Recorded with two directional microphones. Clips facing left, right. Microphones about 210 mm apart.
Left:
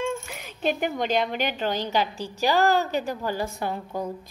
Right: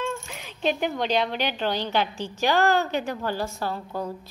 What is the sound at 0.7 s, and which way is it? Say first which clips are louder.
Speech: even; 5° left (ahead or behind).